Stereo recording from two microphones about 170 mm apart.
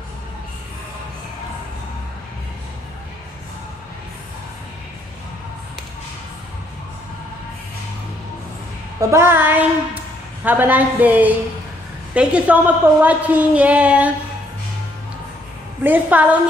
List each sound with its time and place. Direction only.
9.1 s a woman's voice: 15° right (ahead or behind)
15.8 s a woman's voice: 10° right (ahead or behind)